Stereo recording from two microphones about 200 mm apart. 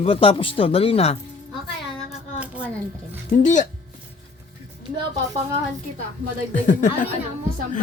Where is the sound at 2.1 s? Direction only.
5° right (ahead or behind).